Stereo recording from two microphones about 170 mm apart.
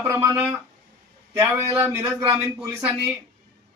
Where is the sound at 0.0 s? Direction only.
15° right (ahead or behind).